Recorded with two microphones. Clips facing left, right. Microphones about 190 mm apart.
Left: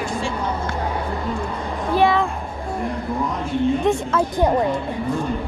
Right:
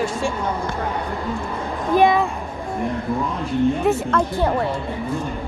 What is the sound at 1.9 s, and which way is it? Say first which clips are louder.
Speech: right 2 dB; 15° right (ahead or behind).